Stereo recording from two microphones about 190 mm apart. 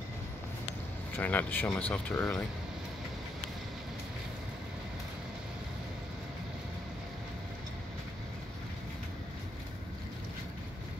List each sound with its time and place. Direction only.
1.1 s speech: 10° left (ahead or behind)